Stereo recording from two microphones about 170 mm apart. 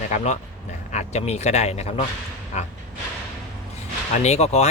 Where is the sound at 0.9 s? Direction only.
40° left (ahead or behind).